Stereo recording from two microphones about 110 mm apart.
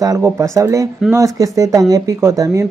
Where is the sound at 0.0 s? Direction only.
30° right (ahead or behind).